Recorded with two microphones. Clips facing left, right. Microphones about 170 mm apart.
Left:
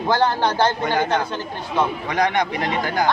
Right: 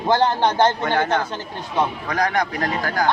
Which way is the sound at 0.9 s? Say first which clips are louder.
Even; 15° left (ahead or behind).